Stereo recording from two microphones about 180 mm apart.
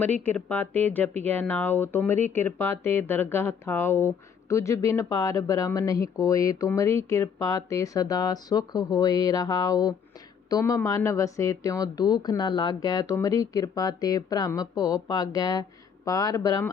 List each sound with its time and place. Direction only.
0.0 s speech: 10° left (ahead or behind)